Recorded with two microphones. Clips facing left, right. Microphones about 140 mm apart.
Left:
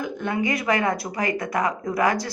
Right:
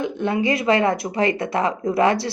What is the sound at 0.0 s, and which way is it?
Speech, 25° right (ahead or behind).